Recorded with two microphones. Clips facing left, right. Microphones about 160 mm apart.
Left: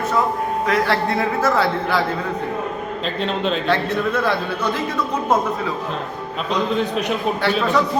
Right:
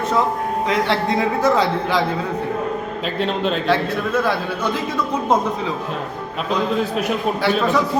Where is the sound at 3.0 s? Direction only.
Centre (ahead or behind).